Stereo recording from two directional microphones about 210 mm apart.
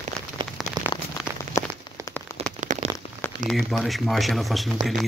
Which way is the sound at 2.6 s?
35° right (ahead or behind).